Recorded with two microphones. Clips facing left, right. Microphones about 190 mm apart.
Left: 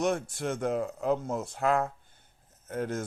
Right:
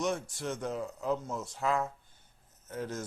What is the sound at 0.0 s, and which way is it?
Speech, 55° left (ahead or behind).